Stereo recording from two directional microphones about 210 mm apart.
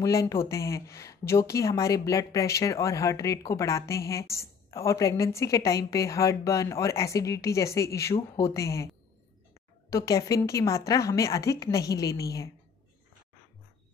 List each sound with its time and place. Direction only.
0.0 s speech: 15° left (ahead or behind)
9.8 s speech: 15° left (ahead or behind)